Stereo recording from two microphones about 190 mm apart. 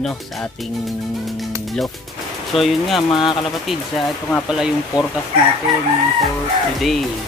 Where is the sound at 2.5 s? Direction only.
Centre (ahead or behind).